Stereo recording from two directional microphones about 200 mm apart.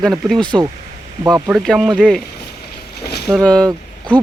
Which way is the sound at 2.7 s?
55° left (ahead or behind).